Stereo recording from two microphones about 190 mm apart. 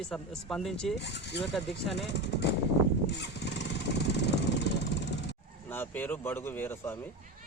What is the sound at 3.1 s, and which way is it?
Motorcycle, 65° left (ahead or behind).